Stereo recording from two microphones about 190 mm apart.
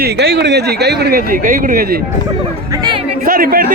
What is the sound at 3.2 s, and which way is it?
Speech, 50° right (ahead or behind).